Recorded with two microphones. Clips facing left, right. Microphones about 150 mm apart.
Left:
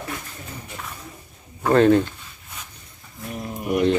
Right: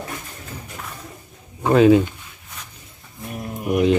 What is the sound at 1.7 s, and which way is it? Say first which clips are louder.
Speech: right 2 dB; 5° right (ahead or behind).